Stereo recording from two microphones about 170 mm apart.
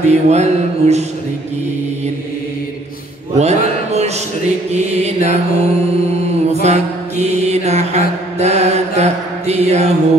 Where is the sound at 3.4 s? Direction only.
40° right (ahead or behind).